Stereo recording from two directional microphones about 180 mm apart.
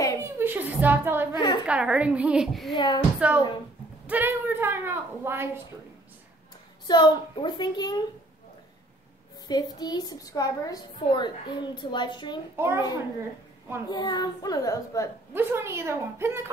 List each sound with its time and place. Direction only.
0.2 s a sound: 10° right (ahead or behind)
1.3 s a sound: 25° left (ahead or behind)
1.7 s a child's voice: 5° right (ahead or behind)
2.7 s a woman's voice: 25° left (ahead or behind)
3.2 s a woman's voice: 10° right (ahead or behind)
6.9 s a woman's voice: 25° left (ahead or behind)
9.5 s a woman's voice: 20° left (ahead or behind)
12.5 s a woman's voice: 15° right (ahead or behind)
13.8 s a woman's voice: 25° left (ahead or behind)
15.3 s a woman's voice: 15° right (ahead or behind)